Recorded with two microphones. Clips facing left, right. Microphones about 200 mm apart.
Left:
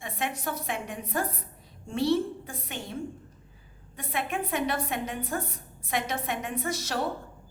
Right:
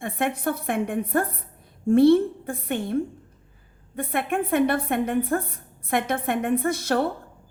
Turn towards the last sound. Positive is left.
turn(degrees=-55)  # may be behind; listen again after turning